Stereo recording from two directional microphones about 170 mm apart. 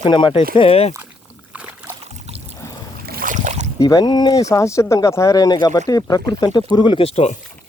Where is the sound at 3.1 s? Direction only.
55° right (ahead or behind).